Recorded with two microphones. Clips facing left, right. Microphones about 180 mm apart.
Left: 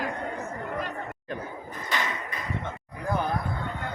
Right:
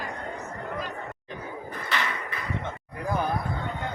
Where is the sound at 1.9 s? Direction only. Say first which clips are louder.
Even; 15° left (ahead or behind).